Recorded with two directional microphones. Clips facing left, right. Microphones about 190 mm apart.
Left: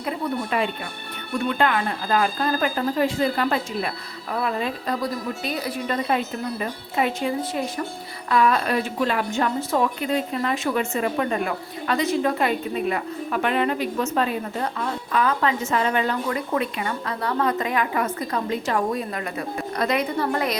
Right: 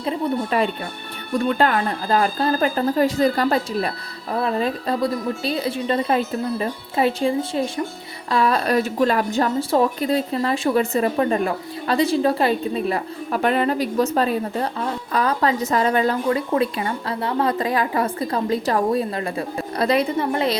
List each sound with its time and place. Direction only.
0.5 s a woman's voice: 35° right (ahead or behind)